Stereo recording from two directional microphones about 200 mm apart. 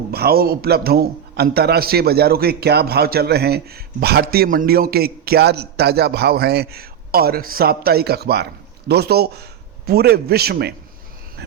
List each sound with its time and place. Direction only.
0.1 s a man's voice: 50° right (ahead or behind)